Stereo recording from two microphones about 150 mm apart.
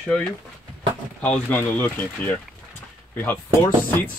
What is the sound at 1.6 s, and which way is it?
Speech, 15° left (ahead or behind).